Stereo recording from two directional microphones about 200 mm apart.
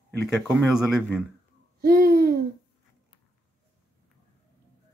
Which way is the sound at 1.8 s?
50° right (ahead or behind).